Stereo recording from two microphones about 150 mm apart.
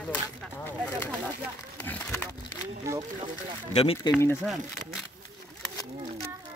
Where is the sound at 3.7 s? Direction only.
40° left (ahead or behind).